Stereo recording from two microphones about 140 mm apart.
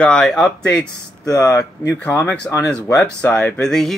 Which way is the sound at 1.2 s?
20° left (ahead or behind).